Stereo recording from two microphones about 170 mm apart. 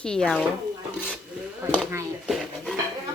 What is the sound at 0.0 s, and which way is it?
Speech, 5° left (ahead or behind).